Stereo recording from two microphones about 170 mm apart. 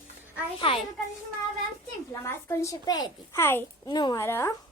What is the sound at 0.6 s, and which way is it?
Speech, 30° left (ahead or behind).